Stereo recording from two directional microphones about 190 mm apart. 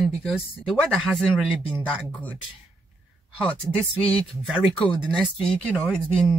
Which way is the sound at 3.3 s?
5° left (ahead or behind).